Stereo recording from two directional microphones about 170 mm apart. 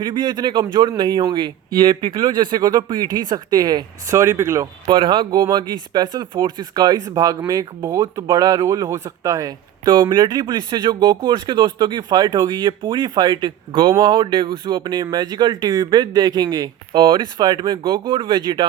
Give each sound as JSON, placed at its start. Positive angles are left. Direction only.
{"t": 0.0, "sound": "a man's voice", "side_deg": -25}